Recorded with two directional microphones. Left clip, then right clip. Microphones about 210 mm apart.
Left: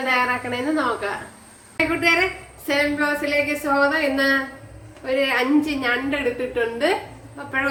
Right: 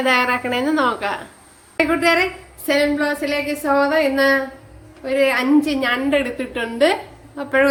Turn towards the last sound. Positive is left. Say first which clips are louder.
# right 7 dB
turn(degrees=-55)  # may be behind; listen again after turning